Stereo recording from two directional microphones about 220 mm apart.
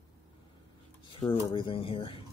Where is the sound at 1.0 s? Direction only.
25° left (ahead or behind).